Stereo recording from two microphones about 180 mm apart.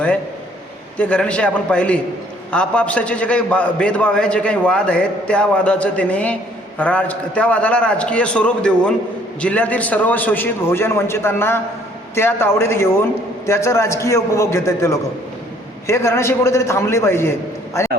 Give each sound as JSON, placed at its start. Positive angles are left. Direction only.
{"t": 0.9, "sound": "a man's voice", "side_deg": 5}